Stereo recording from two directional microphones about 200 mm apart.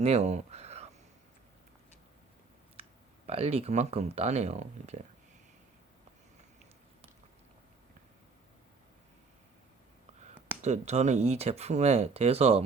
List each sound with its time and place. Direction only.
0.0 s a sound: 30° right (ahead or behind)
3.2 s speech: 30° right (ahead or behind)
10.6 s speech: 35° right (ahead or behind)